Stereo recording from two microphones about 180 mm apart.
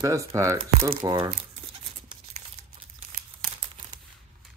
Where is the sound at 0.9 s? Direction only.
30° right (ahead or behind).